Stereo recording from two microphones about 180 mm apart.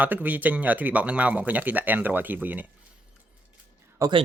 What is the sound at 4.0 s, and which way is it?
Speech, 25° right (ahead or behind).